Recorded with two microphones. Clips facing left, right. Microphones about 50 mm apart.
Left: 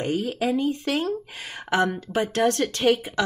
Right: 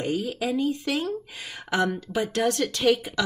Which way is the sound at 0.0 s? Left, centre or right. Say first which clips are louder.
Left 2 dB; left.